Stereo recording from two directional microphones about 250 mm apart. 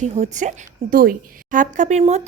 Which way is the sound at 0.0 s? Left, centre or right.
Right.